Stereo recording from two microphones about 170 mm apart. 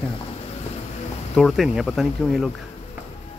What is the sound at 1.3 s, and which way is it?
Speech, centre (ahead or behind).